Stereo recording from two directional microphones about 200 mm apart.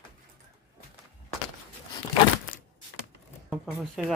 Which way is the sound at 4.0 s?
Centre (ahead or behind).